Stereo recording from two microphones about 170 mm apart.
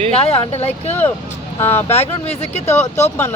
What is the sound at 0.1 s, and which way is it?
Speech, 35° left (ahead or behind).